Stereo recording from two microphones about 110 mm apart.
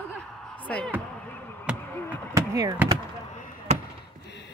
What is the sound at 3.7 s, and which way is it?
Basketball bounce, 90° right.